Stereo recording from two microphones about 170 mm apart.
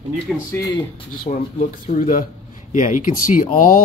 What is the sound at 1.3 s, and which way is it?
Speech, 45° left (ahead or behind).